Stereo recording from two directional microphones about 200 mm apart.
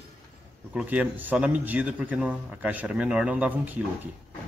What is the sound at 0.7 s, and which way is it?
A man's voice, 5° right (ahead or behind).